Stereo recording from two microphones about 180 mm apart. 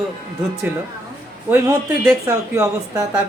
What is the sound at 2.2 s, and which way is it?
Speech, 15° right (ahead or behind).